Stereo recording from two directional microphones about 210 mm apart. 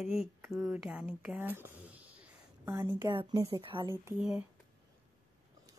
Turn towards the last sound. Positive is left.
turn(degrees=-5)  # may be behind; listen again after turning